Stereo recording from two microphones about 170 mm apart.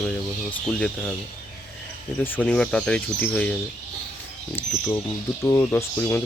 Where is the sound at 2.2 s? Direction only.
10° left (ahead or behind).